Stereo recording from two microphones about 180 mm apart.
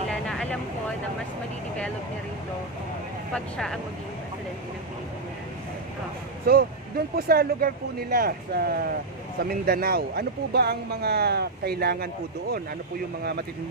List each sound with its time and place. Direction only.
0.1 s vehicle: 5° left (ahead or behind)
3.3 s speech: 5° left (ahead or behind)
6.5 s speech: 55° right (ahead or behind)
13.2 s speech: 65° right (ahead or behind)